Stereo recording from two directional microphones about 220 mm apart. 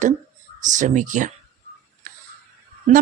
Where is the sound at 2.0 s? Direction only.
35° right (ahead or behind).